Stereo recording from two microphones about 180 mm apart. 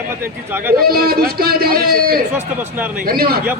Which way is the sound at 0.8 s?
55° right (ahead or behind).